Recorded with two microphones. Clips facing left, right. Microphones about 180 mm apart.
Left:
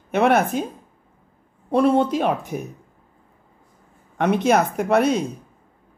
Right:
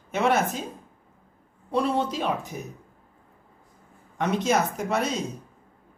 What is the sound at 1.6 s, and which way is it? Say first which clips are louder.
Speech: left 7 dB; 55° left (ahead or behind).